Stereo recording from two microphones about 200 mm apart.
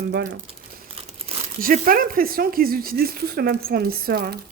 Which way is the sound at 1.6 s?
45° right (ahead or behind).